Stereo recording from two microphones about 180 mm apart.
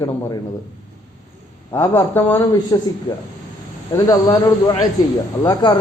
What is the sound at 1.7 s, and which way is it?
Speech, 15° left (ahead or behind).